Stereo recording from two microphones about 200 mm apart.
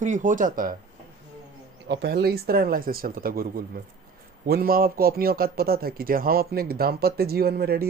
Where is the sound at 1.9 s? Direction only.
55° right (ahead or behind).